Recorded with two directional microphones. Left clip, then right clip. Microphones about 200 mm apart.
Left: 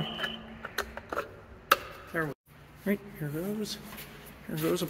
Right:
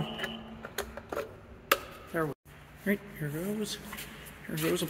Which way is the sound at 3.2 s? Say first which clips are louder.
Even; centre (ahead or behind).